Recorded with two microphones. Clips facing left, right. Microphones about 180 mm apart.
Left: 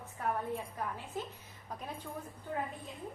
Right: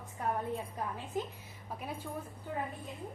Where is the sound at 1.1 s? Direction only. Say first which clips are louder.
Right 5 dB; 15° right (ahead or behind).